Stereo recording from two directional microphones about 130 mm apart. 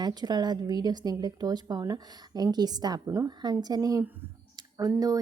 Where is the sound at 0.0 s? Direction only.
30° right (ahead or behind).